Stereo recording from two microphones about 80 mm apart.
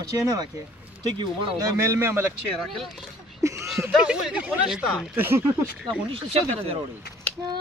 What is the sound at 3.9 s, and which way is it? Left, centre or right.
Speech, centre.